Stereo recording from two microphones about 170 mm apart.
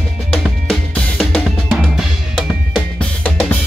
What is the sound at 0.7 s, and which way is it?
Drum kit, centre (ahead or behind).